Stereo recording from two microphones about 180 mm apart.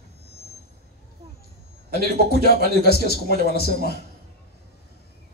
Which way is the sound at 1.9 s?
60° left (ahead or behind).